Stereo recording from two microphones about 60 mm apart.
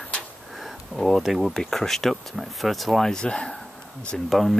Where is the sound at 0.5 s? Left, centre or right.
Centre.